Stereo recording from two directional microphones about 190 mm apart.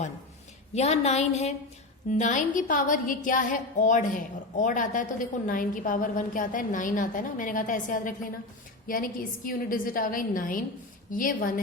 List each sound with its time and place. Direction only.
0.7 s a woman's voice: 35° left (ahead or behind)